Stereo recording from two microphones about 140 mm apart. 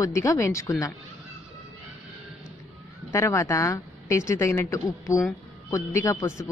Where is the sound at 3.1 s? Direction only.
20° left (ahead or behind).